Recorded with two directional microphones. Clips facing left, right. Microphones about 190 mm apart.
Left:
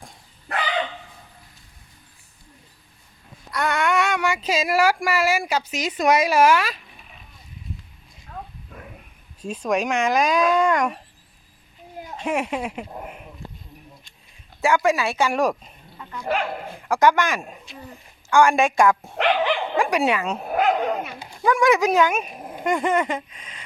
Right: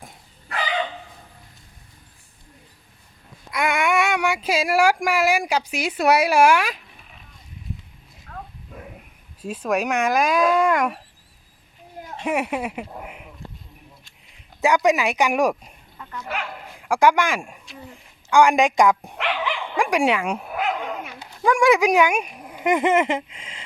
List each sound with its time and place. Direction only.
3.5 s speech: 10° right (ahead or behind)
9.4 s speech: 5° right (ahead or behind)
12.2 s speech: 10° right (ahead or behind)
13.0 s a sound: 10° right (ahead or behind)
14.6 s speech: 15° right (ahead or behind)
16.2 s speech: 35° left (ahead or behind)
16.9 s speech: 10° right (ahead or behind)
19.2 s dog: 40° left (ahead or behind)
19.7 s speech: 10° right (ahead or behind)
20.5 s dog: 40° left (ahead or behind)
21.2 s a sound: 10° left (ahead or behind)
21.4 s speech: 10° right (ahead or behind)
22.6 s a sound: 20° right (ahead or behind)